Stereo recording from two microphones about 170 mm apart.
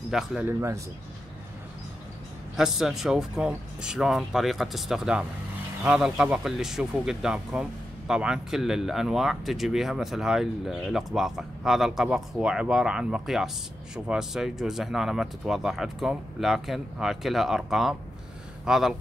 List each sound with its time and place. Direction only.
0.1 s speech: 5° right (ahead or behind)
0.5 s speech: 15° right (ahead or behind)
2.5 s speech: 5° right (ahead or behind)